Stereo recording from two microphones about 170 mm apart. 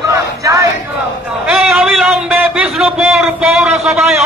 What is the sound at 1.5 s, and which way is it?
A man's voice, centre (ahead or behind).